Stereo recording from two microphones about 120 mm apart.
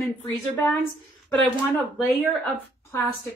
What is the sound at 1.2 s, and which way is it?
A woman's voice, 15° left (ahead or behind).